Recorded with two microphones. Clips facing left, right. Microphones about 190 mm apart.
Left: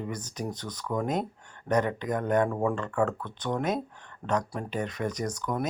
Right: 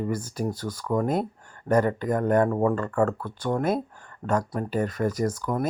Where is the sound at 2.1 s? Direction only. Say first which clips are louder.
Right 4 dB; 5° right (ahead or behind).